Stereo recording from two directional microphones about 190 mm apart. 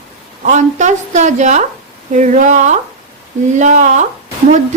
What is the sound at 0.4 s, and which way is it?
A woman's voice, 40° right (ahead or behind).